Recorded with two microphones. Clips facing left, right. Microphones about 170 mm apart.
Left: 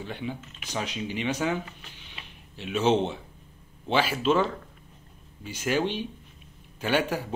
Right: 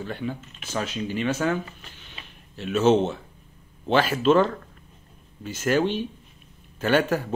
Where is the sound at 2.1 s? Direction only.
45° right (ahead or behind).